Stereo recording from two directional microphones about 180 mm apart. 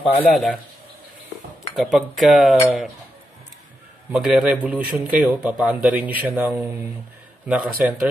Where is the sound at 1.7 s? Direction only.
Centre (ahead or behind).